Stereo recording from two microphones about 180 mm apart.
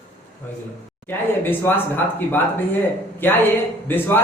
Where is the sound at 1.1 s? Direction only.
10° left (ahead or behind).